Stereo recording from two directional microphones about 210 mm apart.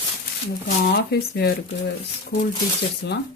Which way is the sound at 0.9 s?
50° left (ahead or behind).